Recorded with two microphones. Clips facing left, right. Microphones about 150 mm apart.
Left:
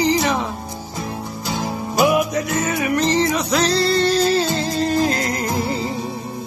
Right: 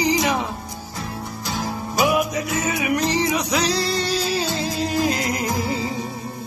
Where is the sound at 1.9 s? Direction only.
Centre (ahead or behind).